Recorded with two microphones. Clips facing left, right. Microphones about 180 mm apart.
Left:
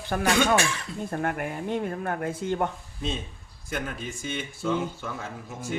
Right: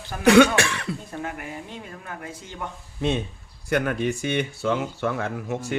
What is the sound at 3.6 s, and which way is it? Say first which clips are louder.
Speech: right 10 dB; 70° right (ahead or behind).